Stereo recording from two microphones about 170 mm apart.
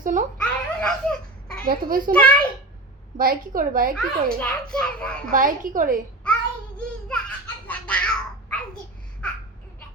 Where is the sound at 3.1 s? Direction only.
60° right (ahead or behind).